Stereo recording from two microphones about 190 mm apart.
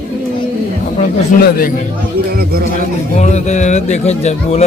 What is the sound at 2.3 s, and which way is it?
Speech, 55° right (ahead or behind).